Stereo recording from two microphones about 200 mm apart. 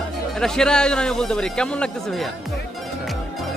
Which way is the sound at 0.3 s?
5° left (ahead or behind).